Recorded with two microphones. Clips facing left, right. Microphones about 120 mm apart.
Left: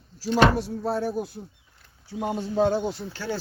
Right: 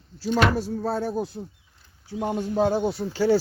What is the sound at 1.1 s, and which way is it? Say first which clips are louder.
Speech: right 2 dB; 25° right (ahead or behind).